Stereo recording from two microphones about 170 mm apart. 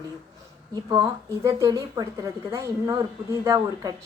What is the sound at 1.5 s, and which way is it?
A woman's voice, 20° right (ahead or behind).